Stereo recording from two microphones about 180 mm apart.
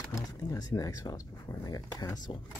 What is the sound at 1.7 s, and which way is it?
Speech, 20° left (ahead or behind).